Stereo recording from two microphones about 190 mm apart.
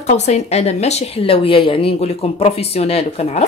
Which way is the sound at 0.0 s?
35° left (ahead or behind).